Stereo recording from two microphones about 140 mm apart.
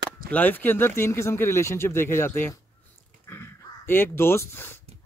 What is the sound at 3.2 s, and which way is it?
Dog, 15° left (ahead or behind).